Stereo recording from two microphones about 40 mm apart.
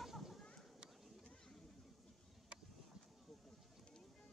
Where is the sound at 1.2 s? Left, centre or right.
Centre.